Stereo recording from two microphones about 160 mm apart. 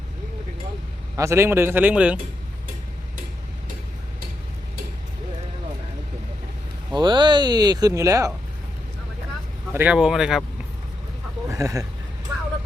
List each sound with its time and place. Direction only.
1.1 s speech: 15° right (ahead or behind)
6.9 s speech: 30° right (ahead or behind)
9.7 s speech: 10° right (ahead or behind)
11.5 s speech: 20° right (ahead or behind)